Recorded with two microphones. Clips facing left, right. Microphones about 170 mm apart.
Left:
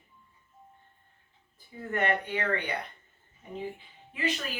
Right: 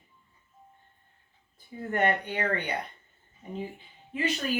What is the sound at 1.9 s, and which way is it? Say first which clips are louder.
Speech: right 2 dB; 40° right (ahead or behind).